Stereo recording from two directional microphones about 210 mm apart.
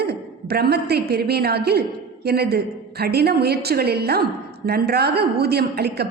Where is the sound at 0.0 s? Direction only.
50° right (ahead or behind).